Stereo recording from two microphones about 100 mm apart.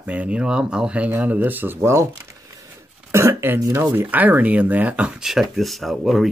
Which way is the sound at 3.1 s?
25° right (ahead or behind).